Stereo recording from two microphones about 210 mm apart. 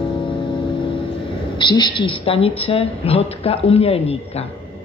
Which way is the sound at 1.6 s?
20° left (ahead or behind).